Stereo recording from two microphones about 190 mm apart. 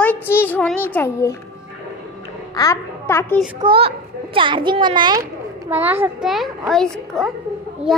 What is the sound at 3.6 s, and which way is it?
A child's voice, 30° right (ahead or behind).